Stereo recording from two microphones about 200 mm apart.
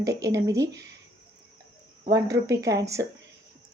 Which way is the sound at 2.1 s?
15° right (ahead or behind).